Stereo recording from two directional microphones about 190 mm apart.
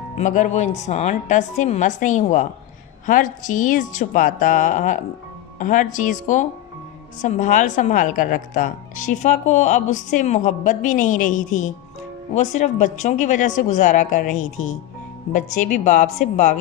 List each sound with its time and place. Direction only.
0.2 s a woman's voice: 40° left (ahead or behind)